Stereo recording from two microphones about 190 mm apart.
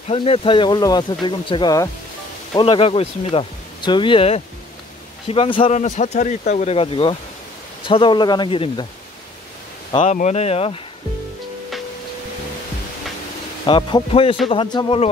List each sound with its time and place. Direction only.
0.1 s speech: 30° left (ahead or behind)
10.0 s speech: 40° left (ahead or behind)
13.7 s speech: 25° left (ahead or behind)